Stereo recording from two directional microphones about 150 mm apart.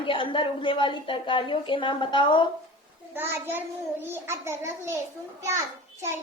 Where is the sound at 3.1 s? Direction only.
15° right (ahead or behind).